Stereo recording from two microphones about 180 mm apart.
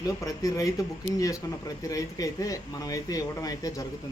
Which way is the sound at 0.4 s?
20° left (ahead or behind).